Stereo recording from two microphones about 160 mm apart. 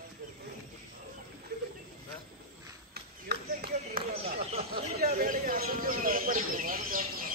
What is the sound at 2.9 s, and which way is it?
Clapping, 75° right (ahead or behind).